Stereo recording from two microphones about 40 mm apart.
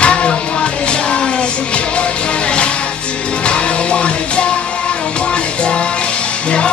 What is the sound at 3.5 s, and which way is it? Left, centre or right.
Music, left.